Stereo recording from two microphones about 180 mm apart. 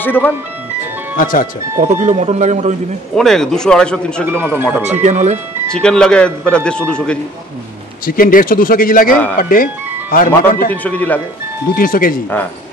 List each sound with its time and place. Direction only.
0.0 s a man's voice: 10° left (ahead or behind)
1.1 s a man's voice: 50° left (ahead or behind)
1.8 s speech: 40° right (ahead or behind)
3.2 s speech: centre (ahead or behind)
4.4 s speech: 10° right (ahead or behind)
4.9 s speech: 40° right (ahead or behind)
5.7 s speech: 5° left (ahead or behind)
8.0 s a man's voice: 50° left (ahead or behind)
10.7 s a man's voice: 10° left (ahead or behind)
11.7 s a man's voice: 50° left (ahead or behind)